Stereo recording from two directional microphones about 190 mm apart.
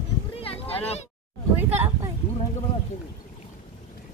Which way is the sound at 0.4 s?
30° left (ahead or behind).